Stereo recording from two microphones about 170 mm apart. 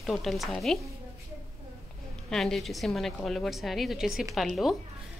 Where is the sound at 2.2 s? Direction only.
Centre (ahead or behind).